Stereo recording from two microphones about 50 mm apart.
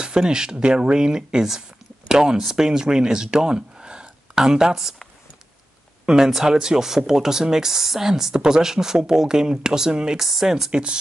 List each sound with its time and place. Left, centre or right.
0.0 s speech: centre
6.0 s speech: centre
10.7 s speech: centre